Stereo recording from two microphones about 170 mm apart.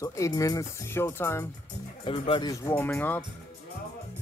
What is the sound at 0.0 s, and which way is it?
Speech, 20° left (ahead or behind).